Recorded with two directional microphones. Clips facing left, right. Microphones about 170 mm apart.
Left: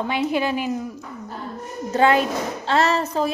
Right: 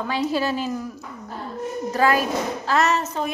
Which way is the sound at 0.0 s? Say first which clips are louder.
Left 1 dB; 20° left (ahead or behind).